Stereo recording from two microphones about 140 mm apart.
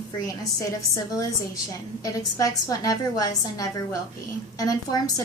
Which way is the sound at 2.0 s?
25° left (ahead or behind).